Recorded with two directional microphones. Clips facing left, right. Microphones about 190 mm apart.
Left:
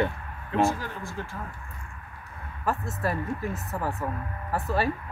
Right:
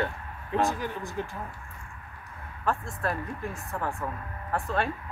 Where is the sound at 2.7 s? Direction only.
5° left (ahead or behind).